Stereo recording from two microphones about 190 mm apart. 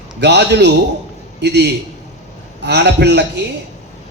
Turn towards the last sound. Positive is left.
turn(degrees=-65)  # may be behind; listen again after turning